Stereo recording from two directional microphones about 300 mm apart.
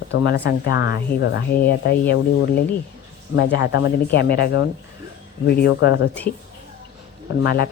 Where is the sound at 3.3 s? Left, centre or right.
Left.